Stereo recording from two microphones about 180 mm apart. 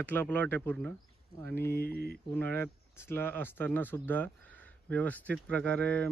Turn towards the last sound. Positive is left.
turn(degrees=5)  # may be behind; listen again after turning